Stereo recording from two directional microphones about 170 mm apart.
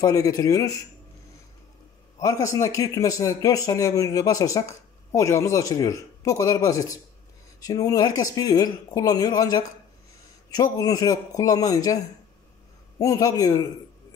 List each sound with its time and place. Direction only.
0.0 s a man's voice: 20° left (ahead or behind)
2.1 s a man's voice: 20° left (ahead or behind)
13.0 s a man's voice: 20° left (ahead or behind)